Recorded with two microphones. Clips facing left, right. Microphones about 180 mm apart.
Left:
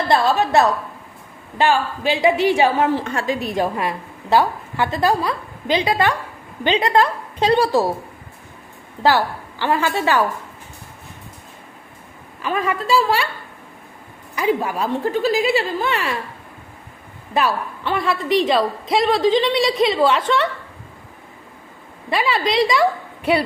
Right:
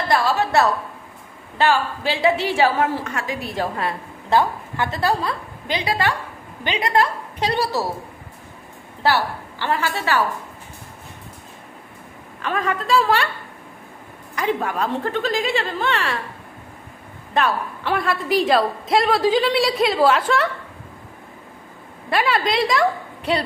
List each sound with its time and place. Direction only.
0.1 s a woman's voice: 20° left (ahead or behind)
9.0 s a woman's voice: 15° left (ahead or behind)
12.4 s a woman's voice: 5° left (ahead or behind)
14.3 s a woman's voice: 5° left (ahead or behind)
17.3 s a woman's voice: centre (ahead or behind)
22.1 s a woman's voice: centre (ahead or behind)